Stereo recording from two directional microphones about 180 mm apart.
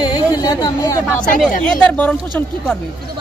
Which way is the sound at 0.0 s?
20° left (ahead or behind).